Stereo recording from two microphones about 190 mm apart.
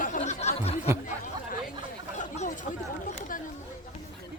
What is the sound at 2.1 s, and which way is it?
Chatter, 40° left (ahead or behind).